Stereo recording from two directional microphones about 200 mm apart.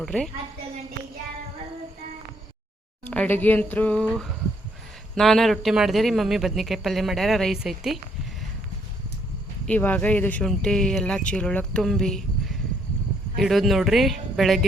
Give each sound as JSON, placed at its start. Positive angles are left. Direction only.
{"t": 0.0, "sound": "a man's voice", "side_deg": 5}
{"t": 3.1, "sound": "a man's voice", "side_deg": 10}
{"t": 9.6, "sound": "a man's voice", "side_deg": 10}